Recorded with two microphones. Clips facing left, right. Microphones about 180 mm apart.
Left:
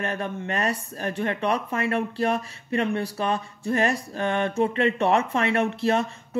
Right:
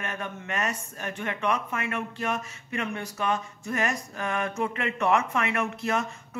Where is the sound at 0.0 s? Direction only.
35° left (ahead or behind).